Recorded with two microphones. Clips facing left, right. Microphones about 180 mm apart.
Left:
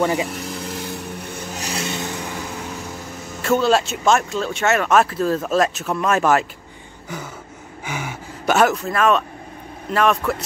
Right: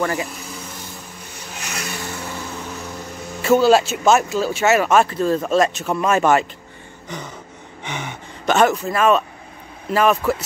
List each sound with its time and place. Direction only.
0.0 s speech: 15° left (ahead or behind)
0.3 s vehicle: 70° left (ahead or behind)
1.5 s vehicle: 35° left (ahead or behind)
3.4 s speech: 5° right (ahead or behind)
7.8 s speech: 5° left (ahead or behind)